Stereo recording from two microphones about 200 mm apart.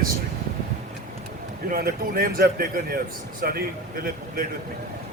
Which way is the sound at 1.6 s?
45° right (ahead or behind).